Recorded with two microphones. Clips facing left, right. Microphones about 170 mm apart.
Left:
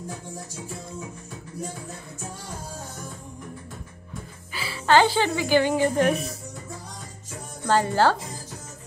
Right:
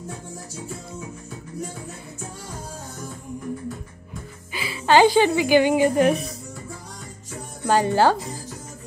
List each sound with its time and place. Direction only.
4.5 s a woman's voice: 15° right (ahead or behind)
7.6 s speech: 15° right (ahead or behind)